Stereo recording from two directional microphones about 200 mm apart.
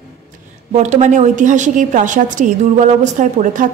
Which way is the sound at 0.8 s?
35° right (ahead or behind).